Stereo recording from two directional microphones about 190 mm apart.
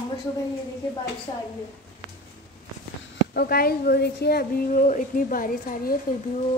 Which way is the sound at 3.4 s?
55° left (ahead or behind).